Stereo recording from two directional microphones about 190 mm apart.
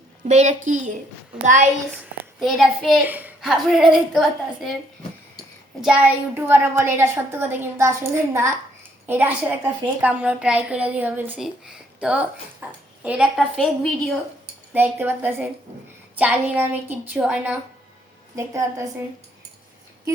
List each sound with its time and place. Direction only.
0.3 s a woman's voice: 40° right (ahead or behind)
2.4 s a woman's voice: centre (ahead or behind)
5.8 s a woman's voice: 5° right (ahead or behind)
14.7 s a woman's voice: 10° right (ahead or behind)